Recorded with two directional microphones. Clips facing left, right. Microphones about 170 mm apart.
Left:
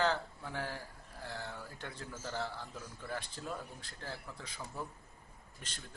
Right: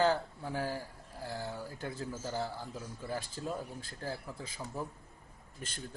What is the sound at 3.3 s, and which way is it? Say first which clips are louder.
Speech: right 4 dB; 45° right (ahead or behind).